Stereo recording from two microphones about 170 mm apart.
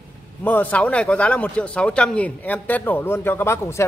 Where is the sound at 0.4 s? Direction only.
10° left (ahead or behind).